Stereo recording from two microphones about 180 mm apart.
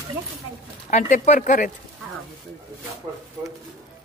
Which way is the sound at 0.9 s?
40° left (ahead or behind).